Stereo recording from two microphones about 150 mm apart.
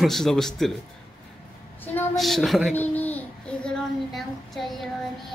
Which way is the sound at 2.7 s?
10° left (ahead or behind).